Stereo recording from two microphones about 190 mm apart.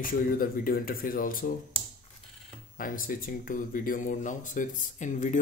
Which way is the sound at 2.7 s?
45° left (ahead or behind).